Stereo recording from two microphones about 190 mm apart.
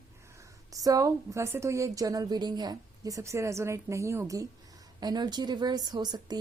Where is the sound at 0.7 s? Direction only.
20° right (ahead or behind).